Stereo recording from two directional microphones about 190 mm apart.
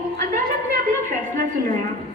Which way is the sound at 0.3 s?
45° right (ahead or behind).